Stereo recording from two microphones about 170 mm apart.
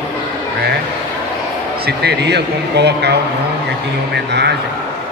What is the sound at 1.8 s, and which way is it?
Speech, 75° right (ahead or behind).